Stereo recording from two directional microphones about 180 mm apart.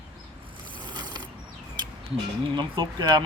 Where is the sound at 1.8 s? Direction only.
25° right (ahead or behind).